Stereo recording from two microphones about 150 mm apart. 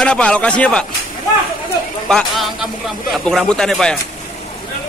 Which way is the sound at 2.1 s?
Centre (ahead or behind).